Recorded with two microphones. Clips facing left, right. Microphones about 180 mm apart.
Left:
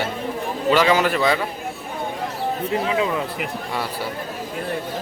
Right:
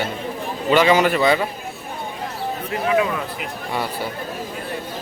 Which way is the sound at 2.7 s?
25° left (ahead or behind).